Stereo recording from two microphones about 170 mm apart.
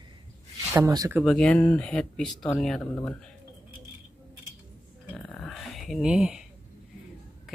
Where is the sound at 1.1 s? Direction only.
Centre (ahead or behind).